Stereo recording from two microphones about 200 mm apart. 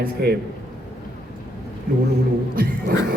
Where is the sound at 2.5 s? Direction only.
50° right (ahead or behind).